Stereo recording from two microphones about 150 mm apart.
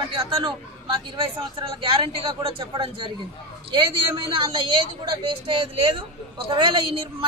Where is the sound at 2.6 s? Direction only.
35° right (ahead or behind).